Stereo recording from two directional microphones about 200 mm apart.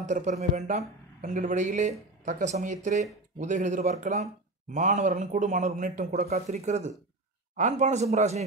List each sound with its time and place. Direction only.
0.0 s speech: 35° right (ahead or behind)
6.3 s speech: 35° right (ahead or behind)